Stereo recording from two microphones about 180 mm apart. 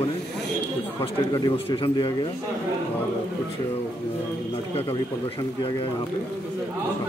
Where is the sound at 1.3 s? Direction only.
25° left (ahead or behind).